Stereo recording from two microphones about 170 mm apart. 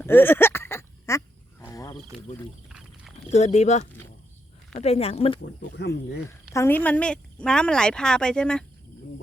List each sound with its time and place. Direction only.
0.0 s a sound: 10° left (ahead or behind)
1.6 s wild animals: 20° left (ahead or behind)
2.6 s a sound: 5° right (ahead or behind)
3.2 s a woman's voice: 40° left (ahead or behind)
5.7 s speech: 85° left
6.5 s speech: 15° left (ahead or behind)